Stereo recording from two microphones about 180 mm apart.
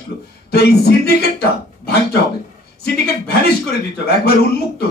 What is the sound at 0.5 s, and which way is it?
Speech, 60° left (ahead or behind).